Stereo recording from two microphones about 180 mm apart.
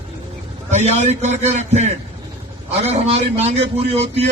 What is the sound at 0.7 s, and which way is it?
A man's voice, 40° right (ahead or behind).